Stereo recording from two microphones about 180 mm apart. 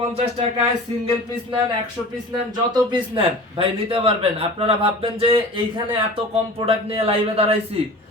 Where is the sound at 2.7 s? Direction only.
25° right (ahead or behind).